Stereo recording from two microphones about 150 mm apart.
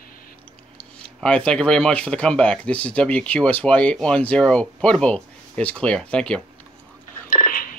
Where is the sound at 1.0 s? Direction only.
5° left (ahead or behind).